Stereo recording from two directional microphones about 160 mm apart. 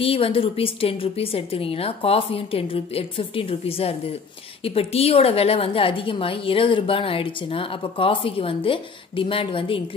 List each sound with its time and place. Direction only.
0.0 s a woman's voice: 35° left (ahead or behind)